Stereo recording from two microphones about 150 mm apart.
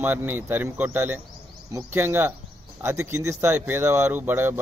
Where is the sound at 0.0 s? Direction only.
15° right (ahead or behind).